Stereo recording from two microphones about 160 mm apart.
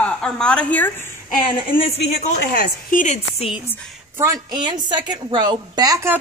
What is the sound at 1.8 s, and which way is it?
Speech, 40° left (ahead or behind).